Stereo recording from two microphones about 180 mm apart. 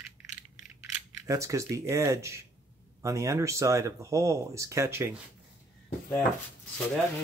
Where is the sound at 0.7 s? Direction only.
20° right (ahead or behind).